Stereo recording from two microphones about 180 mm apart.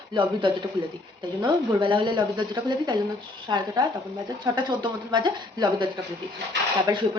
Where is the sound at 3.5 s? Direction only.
25° right (ahead or behind).